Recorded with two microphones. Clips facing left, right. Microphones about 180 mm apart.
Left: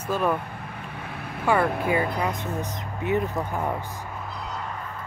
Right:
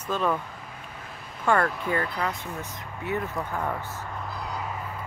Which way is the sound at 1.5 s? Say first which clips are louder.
Left 1 dB; 5° left (ahead or behind).